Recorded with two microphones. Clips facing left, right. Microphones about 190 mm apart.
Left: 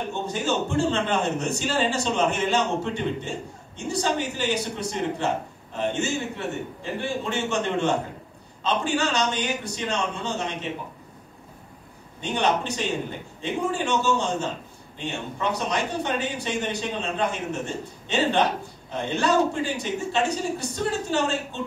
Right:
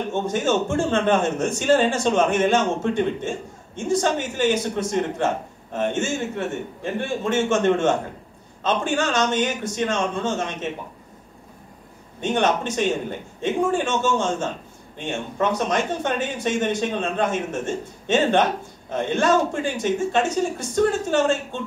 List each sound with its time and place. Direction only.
0.1 s a man's voice: 50° right (ahead or behind)
12.2 s a man's voice: 50° right (ahead or behind)